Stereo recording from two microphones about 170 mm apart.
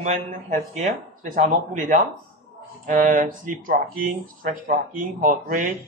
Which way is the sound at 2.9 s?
50° right (ahead or behind).